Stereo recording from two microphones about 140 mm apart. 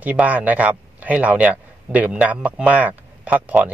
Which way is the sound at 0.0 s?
10° right (ahead or behind).